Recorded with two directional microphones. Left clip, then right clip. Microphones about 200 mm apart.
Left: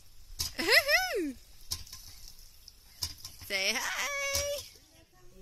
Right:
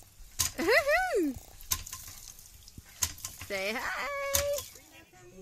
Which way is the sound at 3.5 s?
15° left (ahead or behind).